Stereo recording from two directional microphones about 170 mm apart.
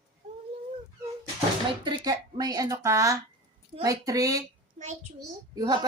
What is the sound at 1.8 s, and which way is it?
Speech, 25° right (ahead or behind).